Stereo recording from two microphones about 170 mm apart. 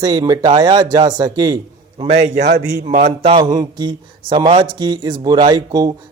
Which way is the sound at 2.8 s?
50° right (ahead or behind).